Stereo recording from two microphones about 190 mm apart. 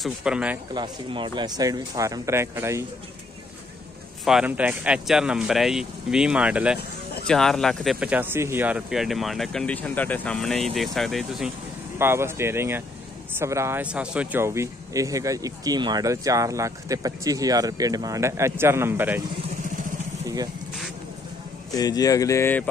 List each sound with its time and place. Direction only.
0.0 s speech: 5° right (ahead or behind)
0.7 s speech: 25° right (ahead or behind)
4.2 s speech: 5° right (ahead or behind)
12.0 s speech: 15° right (ahead or behind)
21.7 s speech: 20° left (ahead or behind)